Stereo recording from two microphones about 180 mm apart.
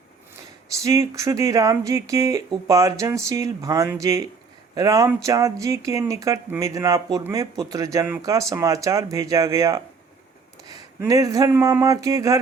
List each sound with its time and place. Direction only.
0.9 s speech: 15° right (ahead or behind)